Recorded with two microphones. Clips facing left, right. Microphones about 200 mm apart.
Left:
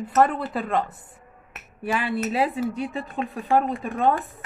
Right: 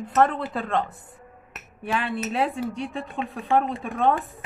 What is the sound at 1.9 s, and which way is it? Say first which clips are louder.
Speech: left 1 dB; 5° left (ahead or behind).